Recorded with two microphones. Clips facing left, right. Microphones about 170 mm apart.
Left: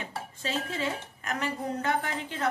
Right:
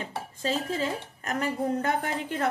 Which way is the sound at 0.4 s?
40° right (ahead or behind).